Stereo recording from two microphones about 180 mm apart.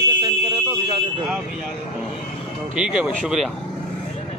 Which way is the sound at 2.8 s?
5° right (ahead or behind).